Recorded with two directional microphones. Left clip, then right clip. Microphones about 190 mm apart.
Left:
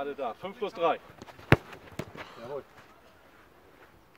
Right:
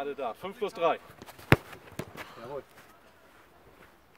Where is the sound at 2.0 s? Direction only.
10° right (ahead or behind).